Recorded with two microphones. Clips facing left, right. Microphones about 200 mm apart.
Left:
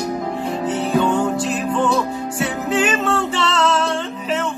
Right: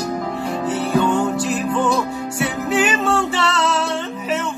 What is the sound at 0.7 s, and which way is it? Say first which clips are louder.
Music: even; 25° left (ahead or behind).